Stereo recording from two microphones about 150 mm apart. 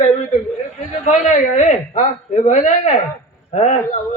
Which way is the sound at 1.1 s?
55° left (ahead or behind).